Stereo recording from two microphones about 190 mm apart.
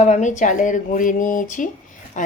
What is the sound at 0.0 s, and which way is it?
Speech, 40° left (ahead or behind).